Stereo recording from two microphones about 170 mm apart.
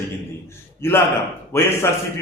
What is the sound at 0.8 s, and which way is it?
Speech, 15° left (ahead or behind).